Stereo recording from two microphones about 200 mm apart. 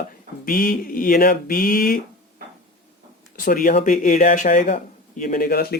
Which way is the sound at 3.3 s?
45° left (ahead or behind).